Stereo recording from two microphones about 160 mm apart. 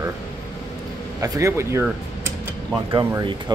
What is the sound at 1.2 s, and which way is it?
Speech, 20° right (ahead or behind).